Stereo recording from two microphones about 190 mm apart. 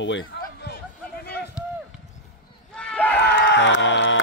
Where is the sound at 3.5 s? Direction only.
70° left (ahead or behind).